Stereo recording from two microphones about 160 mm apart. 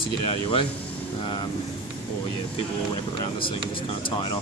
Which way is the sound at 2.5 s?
35° left (ahead or behind).